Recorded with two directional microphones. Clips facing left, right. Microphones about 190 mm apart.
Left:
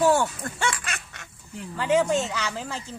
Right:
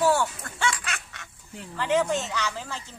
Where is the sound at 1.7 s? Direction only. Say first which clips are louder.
Left 2 dB; 10° left (ahead or behind).